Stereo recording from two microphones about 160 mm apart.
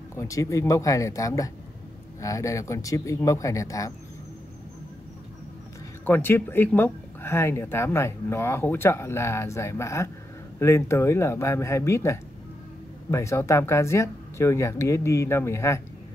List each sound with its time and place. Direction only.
0.1 s speech: 20° left (ahead or behind)
6.0 s speech: 15° left (ahead or behind)